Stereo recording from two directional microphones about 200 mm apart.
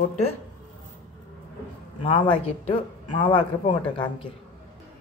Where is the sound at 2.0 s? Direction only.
25° left (ahead or behind).